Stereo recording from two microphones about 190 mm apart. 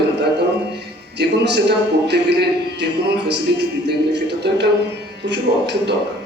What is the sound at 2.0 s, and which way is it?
Speech, 60° right (ahead or behind).